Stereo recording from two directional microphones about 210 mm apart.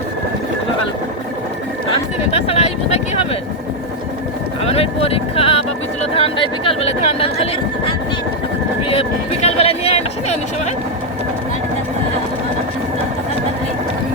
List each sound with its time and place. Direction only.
2.3 s speech: 30° left (ahead or behind)
4.6 s speech: 30° left (ahead or behind)
8.8 s speech: 25° left (ahead or behind)